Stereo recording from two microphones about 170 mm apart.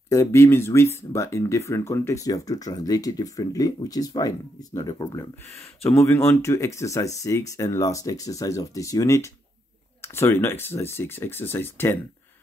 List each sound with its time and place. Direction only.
0.1 s speech: 15° left (ahead or behind)